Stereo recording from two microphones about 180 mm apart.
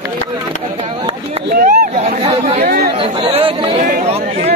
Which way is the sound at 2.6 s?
55° right (ahead or behind).